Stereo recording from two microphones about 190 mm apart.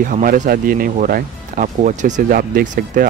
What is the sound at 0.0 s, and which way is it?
Speech, 45° right (ahead or behind).